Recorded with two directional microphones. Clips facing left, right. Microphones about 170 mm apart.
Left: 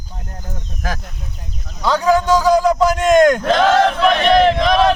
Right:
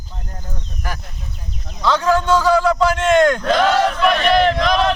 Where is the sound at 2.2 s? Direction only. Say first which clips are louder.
Left 2 dB; 40° left (ahead or behind).